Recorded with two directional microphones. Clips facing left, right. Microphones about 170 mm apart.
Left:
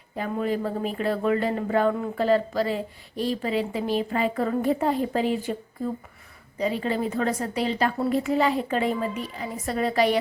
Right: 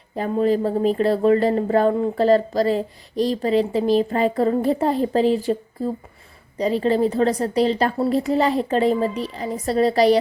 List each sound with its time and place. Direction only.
0.2 s speech: 35° right (ahead or behind)